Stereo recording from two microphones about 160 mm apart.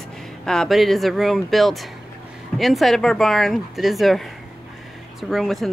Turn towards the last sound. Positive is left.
turn(degrees=0)  # may be behind; listen again after turning